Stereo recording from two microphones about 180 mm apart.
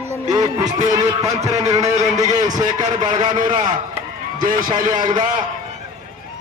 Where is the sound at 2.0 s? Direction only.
40° right (ahead or behind).